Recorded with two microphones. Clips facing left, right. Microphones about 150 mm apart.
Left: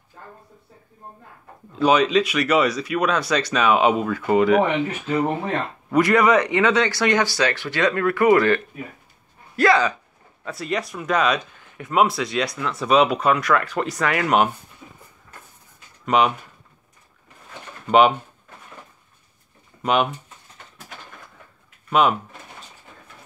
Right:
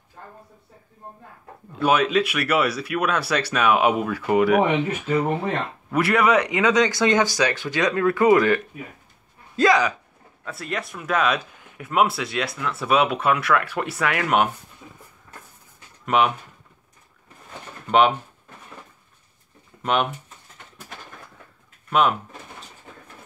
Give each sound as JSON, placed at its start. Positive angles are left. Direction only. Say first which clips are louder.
{"t": 1.8, "sound": "speech", "louder": "left 2 dB", "side_deg": -5}
{"t": 9.6, "sound": "speech", "louder": "left 1 dB", "side_deg": -15}
{"t": 10.4, "sound": "speech", "louder": "left 4 dB", "side_deg": 0}
{"t": 16.1, "sound": "speech", "louder": "left 1 dB", "side_deg": 0}
{"t": 19.8, "sound": "speech", "louder": "left 2 dB", "side_deg": 0}